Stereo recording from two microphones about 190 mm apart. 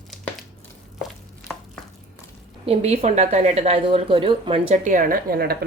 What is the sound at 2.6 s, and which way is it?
A woman's voice, 35° right (ahead or behind).